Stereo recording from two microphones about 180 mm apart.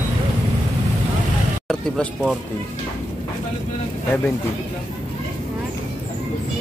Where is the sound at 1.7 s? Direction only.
5° left (ahead or behind).